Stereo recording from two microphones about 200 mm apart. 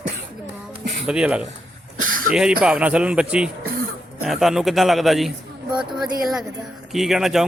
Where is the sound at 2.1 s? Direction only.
45° right (ahead or behind).